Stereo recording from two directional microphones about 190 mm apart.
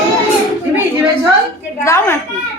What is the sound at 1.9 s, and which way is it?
Speech, 15° left (ahead or behind).